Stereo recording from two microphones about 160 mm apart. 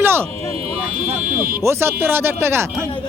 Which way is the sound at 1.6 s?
15° right (ahead or behind).